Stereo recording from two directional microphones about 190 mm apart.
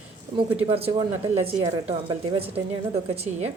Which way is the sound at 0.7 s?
30° right (ahead or behind).